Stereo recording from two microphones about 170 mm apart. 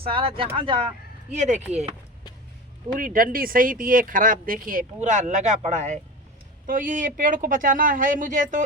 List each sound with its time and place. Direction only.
0.0 s speech: 35° right (ahead or behind)
1.3 s speech: 45° right (ahead or behind)
2.9 s speech: 55° right (ahead or behind)